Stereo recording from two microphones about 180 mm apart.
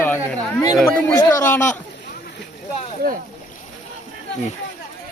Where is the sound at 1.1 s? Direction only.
20° left (ahead or behind).